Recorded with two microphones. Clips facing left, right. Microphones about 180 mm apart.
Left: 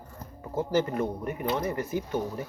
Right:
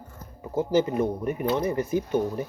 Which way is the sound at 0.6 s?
15° right (ahead or behind).